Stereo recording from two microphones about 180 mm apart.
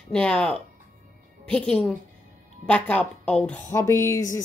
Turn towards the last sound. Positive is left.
turn(degrees=15)  # may be behind; listen again after turning